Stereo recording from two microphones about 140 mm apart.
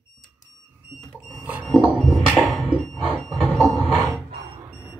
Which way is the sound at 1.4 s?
10° right (ahead or behind).